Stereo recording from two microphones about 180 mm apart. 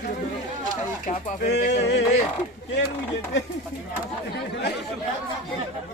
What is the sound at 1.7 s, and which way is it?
Male singing, 70° left (ahead or behind).